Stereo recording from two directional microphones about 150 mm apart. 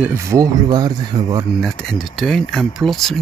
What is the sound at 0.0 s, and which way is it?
Speech, 15° right (ahead or behind).